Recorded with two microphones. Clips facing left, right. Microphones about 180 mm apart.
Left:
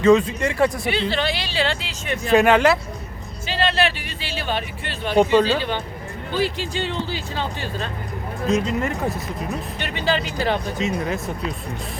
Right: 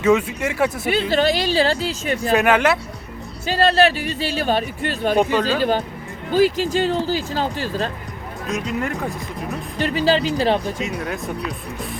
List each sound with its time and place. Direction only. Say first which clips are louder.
0.0 s speech: left 2 dB; 10° right (ahead or behind)
1.1 s speech: right 6 dB; 40° right (ahead or behind)
2.3 s speech: left 2 dB; centre (ahead or behind)
3.4 s speech: right 5 dB; 40° right (ahead or behind)
5.1 s speech: left 4 dB; 15° left (ahead or behind)
5.5 s speech: right 5 dB; 40° right (ahead or behind)
8.4 s speech: left 3 dB; centre (ahead or behind)
9.7 s speech: right 7 dB; 35° right (ahead or behind)
10.8 s speech: left 2 dB; centre (ahead or behind)